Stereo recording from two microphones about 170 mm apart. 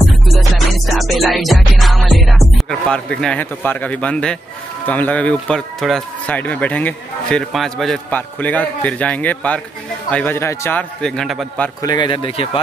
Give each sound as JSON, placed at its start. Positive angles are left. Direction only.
{"t": 0.7, "sound": "music", "side_deg": 0}
{"t": 4.8, "sound": "speech", "side_deg": 10}
{"t": 11.8, "sound": "speech", "side_deg": 25}